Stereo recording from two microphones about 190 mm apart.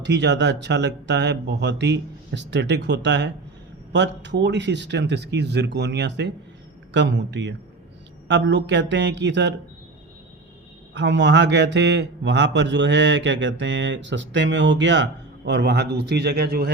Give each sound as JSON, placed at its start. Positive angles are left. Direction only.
{"t": 0.0, "sound": "a man's voice", "side_deg": -65}
{"t": 10.9, "sound": "a man's voice", "side_deg": -70}